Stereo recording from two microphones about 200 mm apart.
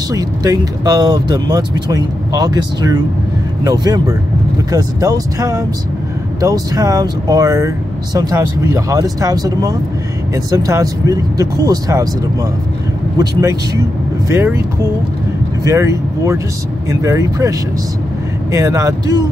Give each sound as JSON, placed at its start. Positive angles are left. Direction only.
{"t": 0.1, "sound": "speech", "side_deg": -20}
{"t": 14.3, "sound": "speech", "side_deg": -10}